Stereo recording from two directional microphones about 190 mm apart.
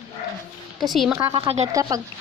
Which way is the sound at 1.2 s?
30° right (ahead or behind).